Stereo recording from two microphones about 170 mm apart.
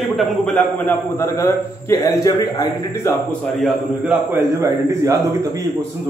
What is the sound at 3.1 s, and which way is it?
A man's voice, centre (ahead or behind).